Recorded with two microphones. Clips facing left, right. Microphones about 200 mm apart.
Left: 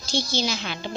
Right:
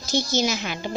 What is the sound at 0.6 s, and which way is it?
Speech, 10° right (ahead or behind).